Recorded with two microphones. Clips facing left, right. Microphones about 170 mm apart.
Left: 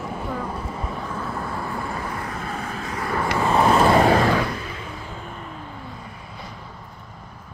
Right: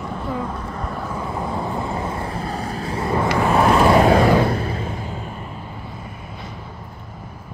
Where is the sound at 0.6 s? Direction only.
5° left (ahead or behind).